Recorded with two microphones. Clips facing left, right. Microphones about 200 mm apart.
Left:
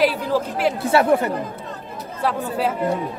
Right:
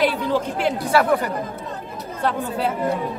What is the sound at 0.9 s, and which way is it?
Speech, 25° left (ahead or behind).